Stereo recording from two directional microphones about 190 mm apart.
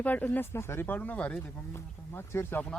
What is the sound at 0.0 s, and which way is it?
Speech, 10° left (ahead or behind).